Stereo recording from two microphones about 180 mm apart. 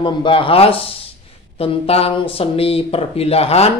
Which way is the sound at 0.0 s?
30° left (ahead or behind).